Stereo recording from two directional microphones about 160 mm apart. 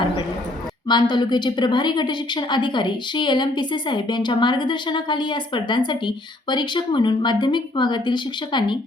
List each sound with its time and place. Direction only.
0.9 s a woman's voice: 30° left (ahead or behind)